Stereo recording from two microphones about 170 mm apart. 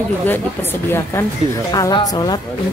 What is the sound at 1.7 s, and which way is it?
Speech, 20° left (ahead or behind).